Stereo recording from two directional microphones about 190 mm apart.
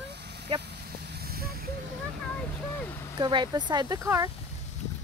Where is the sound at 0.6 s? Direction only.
60° right (ahead or behind).